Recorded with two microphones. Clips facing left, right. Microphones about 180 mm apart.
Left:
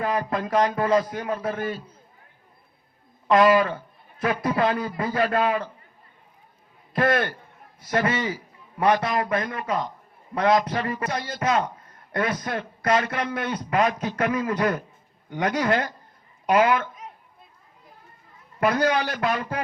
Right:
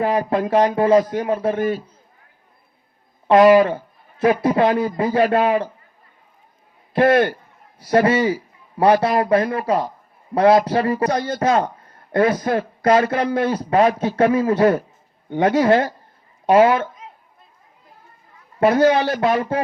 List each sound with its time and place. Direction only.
0.0 s a man's voice: 25° right (ahead or behind)
3.2 s a man's voice: 25° right (ahead or behind)
6.9 s a man's voice: 25° right (ahead or behind)
18.6 s a man's voice: 25° right (ahead or behind)